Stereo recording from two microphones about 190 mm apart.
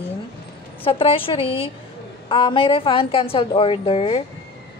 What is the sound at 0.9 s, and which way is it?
A woman's voice, 30° left (ahead or behind).